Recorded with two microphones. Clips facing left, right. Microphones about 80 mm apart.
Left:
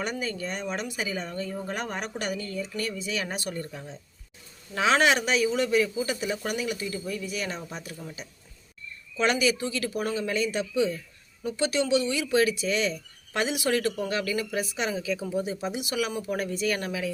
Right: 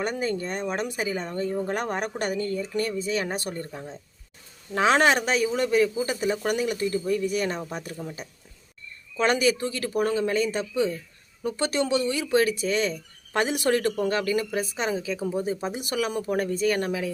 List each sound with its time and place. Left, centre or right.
0.0 s speech: right
9.1 s speech: right